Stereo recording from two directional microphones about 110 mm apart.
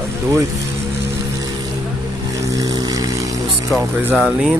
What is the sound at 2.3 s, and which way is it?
Vehicle, 30° right (ahead or behind).